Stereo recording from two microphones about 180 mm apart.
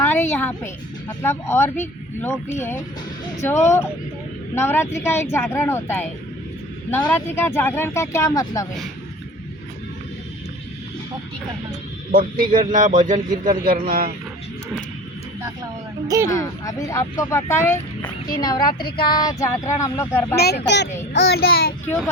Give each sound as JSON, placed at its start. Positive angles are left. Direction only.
{"t": 0.0, "sound": "speech", "side_deg": 10}
{"t": 7.1, "sound": "speech", "side_deg": 10}
{"t": 12.1, "sound": "speech", "side_deg": -50}
{"t": 16.2, "sound": "speech", "side_deg": 15}
{"t": 20.3, "sound": "speech", "side_deg": 65}
{"t": 21.1, "sound": "child singing", "side_deg": 70}
{"t": 21.8, "sound": "speech", "side_deg": 15}